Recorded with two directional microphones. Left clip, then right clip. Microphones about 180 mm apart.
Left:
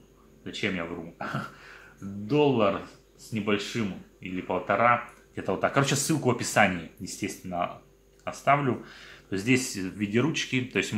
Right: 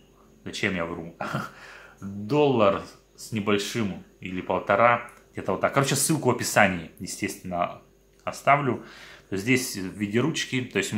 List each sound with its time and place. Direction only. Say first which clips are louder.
0.4 s speech: right 3 dB; 20° right (ahead or behind)